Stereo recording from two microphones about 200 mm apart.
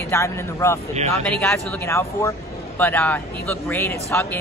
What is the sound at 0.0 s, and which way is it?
Speech, 15° left (ahead or behind).